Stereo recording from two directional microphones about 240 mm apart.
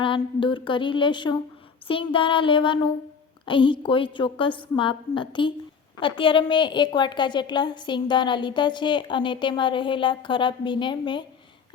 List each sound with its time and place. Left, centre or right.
0.0 s a woman's voice: left